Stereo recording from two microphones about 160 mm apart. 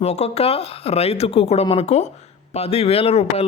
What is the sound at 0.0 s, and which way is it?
A man's voice, 40° left (ahead or behind).